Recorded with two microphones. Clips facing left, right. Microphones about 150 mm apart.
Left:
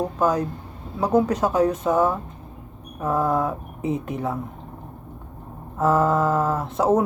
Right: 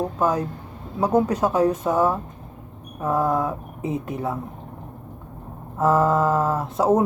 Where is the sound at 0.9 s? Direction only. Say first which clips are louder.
Even; 10° right (ahead or behind).